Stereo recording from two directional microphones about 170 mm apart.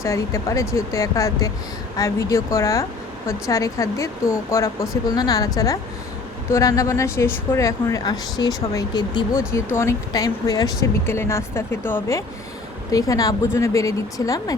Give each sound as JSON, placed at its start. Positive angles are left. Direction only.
{"t": 0.0, "sound": "speech", "side_deg": 15}